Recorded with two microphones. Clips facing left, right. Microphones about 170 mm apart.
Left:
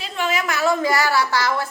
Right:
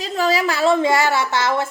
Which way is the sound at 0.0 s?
35° right (ahead or behind).